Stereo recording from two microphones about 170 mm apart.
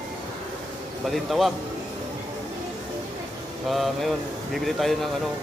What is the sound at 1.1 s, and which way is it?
Speech, centre (ahead or behind).